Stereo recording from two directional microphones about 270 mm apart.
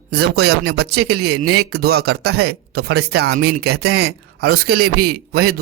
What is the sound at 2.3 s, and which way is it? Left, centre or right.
Speech, right.